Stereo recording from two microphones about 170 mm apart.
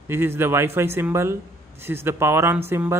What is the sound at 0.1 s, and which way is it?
Speech, 15° right (ahead or behind).